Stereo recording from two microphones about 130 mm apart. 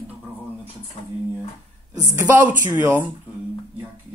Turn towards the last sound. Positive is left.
turn(degrees=-15)  # may be behind; listen again after turning